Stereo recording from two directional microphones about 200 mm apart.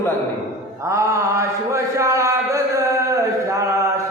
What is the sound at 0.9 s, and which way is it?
Mantra, 15° right (ahead or behind).